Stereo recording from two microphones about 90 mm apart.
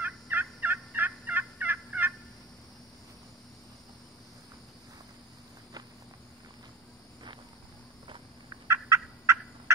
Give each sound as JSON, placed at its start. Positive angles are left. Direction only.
{"t": 0.0, "sound": "fowl", "side_deg": -20}
{"t": 8.6, "sound": "gobble", "side_deg": -30}